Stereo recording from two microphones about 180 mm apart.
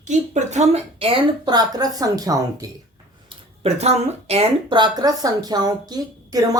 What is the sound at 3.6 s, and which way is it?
Speech, 35° right (ahead or behind).